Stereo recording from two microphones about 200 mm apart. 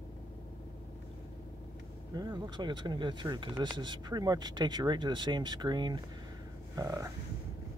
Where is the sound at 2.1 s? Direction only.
20° right (ahead or behind).